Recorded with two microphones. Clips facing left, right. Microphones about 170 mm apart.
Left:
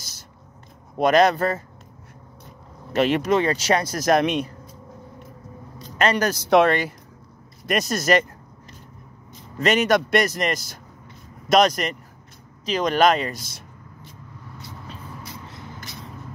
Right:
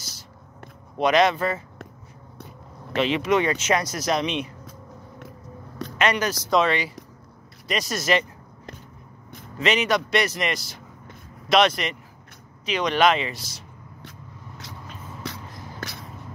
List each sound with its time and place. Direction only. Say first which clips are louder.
0.9 s speech: left 2 dB; 45° left (ahead or behind)
2.9 s speech: left 3 dB; 45° left (ahead or behind)
3.3 s speech: left 1 dB; 35° left (ahead or behind)
4.0 s speech: left 5 dB; 50° left (ahead or behind)
5.9 s speech: left 2 dB; 40° left (ahead or behind)
6.4 s speech: left 5 dB; 60° left (ahead or behind)
9.6 s speech: left 3 dB; 45° left (ahead or behind)
15.2 s a sound: right 5 dB; 90° right